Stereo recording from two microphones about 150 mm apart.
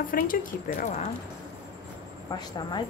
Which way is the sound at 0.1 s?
65° left (ahead or behind).